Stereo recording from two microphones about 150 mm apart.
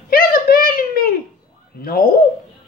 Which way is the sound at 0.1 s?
80° left.